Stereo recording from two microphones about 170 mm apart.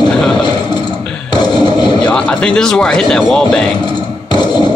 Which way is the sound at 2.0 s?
5° left (ahead or behind).